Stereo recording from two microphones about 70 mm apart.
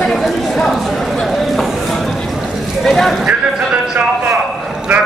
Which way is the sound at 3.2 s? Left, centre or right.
Centre.